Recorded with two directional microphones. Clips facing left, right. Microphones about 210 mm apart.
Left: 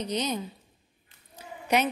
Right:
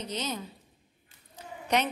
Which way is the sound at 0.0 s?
15° left (ahead or behind).